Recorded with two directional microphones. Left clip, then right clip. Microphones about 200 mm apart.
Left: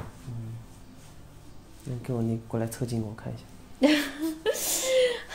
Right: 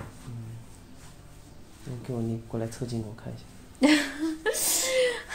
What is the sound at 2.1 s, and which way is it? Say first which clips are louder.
Speech: left 2 dB; 35° left (ahead or behind).